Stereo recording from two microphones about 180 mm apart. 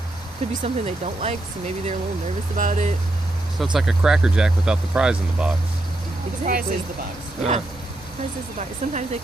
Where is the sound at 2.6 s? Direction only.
45° right (ahead or behind).